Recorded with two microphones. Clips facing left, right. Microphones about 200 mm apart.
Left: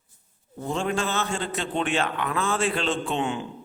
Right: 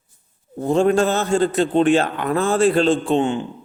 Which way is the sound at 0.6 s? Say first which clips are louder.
Right 11 dB; 40° right (ahead or behind).